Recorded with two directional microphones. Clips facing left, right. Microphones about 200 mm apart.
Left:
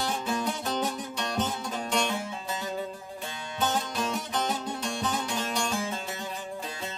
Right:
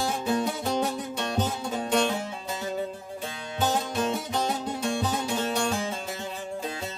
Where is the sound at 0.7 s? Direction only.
25° right (ahead or behind).